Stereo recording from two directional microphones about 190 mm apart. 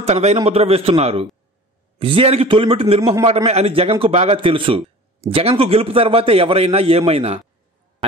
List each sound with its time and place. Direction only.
0.0 s a man's voice: 35° right (ahead or behind)